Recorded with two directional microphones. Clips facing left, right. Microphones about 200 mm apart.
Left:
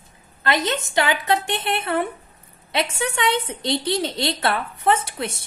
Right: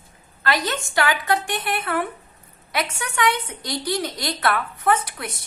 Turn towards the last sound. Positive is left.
turn(degrees=25)  # may be behind; listen again after turning